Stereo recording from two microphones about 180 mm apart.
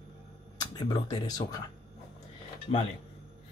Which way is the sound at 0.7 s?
25° left (ahead or behind).